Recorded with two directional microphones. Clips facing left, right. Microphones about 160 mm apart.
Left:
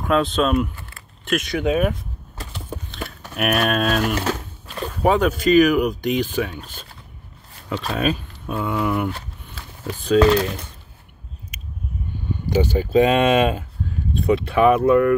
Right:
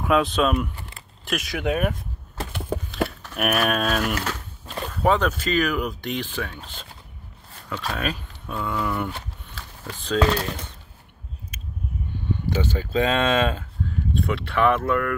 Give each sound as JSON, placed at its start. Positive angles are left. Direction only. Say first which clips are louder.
{"t": 0.0, "sound": "speech", "louder": "left 1 dB", "side_deg": -5}
{"t": 3.3, "sound": "speech", "louder": "left 2 dB", "side_deg": 0}
{"t": 4.1, "sound": "speech", "louder": "left 5 dB", "side_deg": 30}
{"t": 4.8, "sound": "speech", "louder": "left 3 dB", "side_deg": 10}
{"t": 7.7, "sound": "speech", "louder": "left 6 dB", "side_deg": 20}
{"t": 9.6, "sound": "a sound", "louder": "left 7 dB", "side_deg": 15}
{"t": 12.4, "sound": "speech", "louder": "left 8 dB", "side_deg": 15}